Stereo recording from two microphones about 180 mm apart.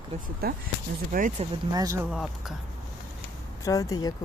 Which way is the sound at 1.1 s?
50° right (ahead or behind).